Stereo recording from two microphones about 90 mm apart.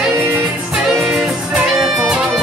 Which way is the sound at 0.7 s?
5° right (ahead or behind).